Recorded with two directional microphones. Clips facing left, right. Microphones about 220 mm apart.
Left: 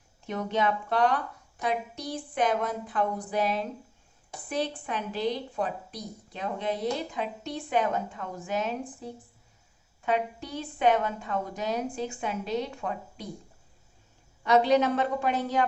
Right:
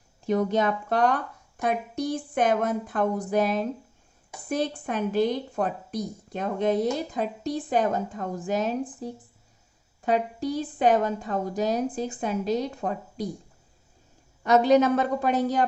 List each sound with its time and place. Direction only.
0.3 s a woman's voice: 40° right (ahead or behind)
14.4 s a woman's voice: 45° right (ahead or behind)